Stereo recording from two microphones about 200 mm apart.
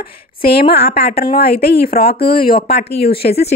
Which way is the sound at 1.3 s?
50° left (ahead or behind).